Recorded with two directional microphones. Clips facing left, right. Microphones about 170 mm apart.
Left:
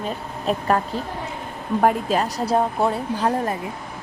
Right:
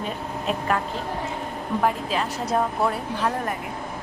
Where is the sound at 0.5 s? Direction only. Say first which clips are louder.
Left 4 dB; 35° left (ahead or behind).